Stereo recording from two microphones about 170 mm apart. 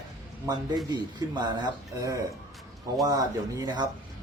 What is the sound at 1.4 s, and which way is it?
Speech, 25° right (ahead or behind).